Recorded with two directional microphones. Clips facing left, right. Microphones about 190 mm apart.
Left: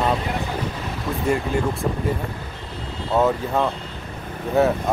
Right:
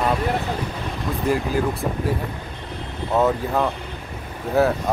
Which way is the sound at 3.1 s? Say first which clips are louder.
Even; centre (ahead or behind).